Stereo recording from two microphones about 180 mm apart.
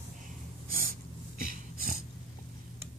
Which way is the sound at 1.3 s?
50° right (ahead or behind).